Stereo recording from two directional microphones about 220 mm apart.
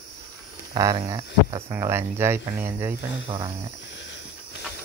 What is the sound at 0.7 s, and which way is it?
Speech, 20° right (ahead or behind).